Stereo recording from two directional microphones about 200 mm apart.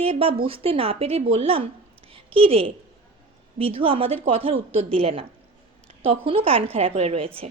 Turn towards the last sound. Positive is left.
turn(degrees=-30)  # may be behind; listen again after turning